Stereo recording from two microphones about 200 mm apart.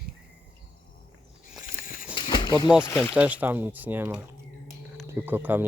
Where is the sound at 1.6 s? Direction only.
45° left (ahead or behind).